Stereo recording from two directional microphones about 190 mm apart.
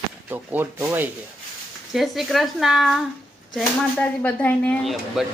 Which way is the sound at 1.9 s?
Centre (ahead or behind).